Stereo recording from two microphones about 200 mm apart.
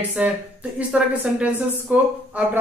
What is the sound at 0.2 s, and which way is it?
A woman's voice, 5° right (ahead or behind).